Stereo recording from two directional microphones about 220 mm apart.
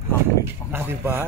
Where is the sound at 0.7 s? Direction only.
10° right (ahead or behind).